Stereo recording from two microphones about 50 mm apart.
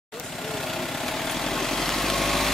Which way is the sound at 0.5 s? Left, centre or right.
Centre.